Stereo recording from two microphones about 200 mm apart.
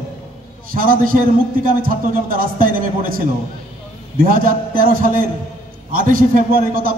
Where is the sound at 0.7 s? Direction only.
45° right (ahead or behind).